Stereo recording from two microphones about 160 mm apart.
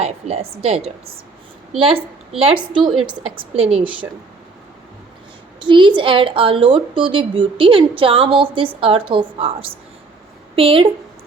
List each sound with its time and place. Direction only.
0.0 s a woman's voice: 40° right (ahead or behind)
2.4 s a woman's voice: 35° right (ahead or behind)
5.5 s a woman's voice: 30° right (ahead or behind)